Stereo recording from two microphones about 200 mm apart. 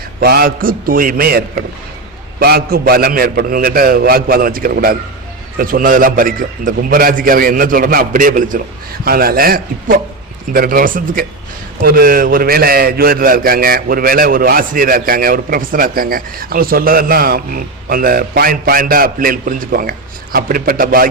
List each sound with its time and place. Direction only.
0.2 s a man's voice: 50° right (ahead or behind)